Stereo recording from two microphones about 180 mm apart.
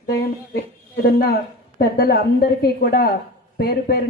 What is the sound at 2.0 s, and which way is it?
Speech, 55° left (ahead or behind).